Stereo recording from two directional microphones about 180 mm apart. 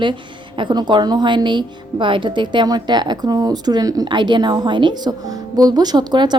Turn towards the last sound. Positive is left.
turn(degrees=-25)  # may be behind; listen again after turning